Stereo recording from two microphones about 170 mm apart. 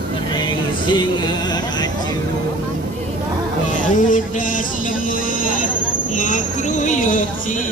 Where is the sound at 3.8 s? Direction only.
50° left (ahead or behind).